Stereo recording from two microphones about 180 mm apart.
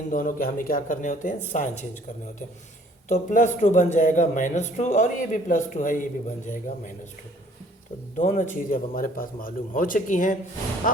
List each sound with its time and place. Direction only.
0.1 s speech: 50° left (ahead or behind)
3.1 s speech: 45° left (ahead or behind)
8.1 s speech: 40° left (ahead or behind)